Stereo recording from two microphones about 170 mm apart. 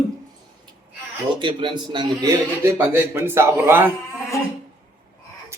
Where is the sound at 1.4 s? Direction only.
30° right (ahead or behind).